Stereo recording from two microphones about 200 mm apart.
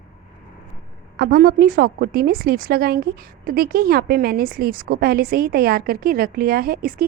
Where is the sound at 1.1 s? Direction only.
50° right (ahead or behind).